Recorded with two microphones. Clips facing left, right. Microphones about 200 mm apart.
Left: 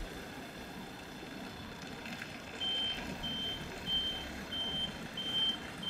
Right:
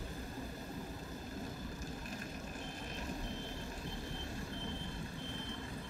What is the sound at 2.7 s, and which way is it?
Vehicle, 70° left (ahead or behind).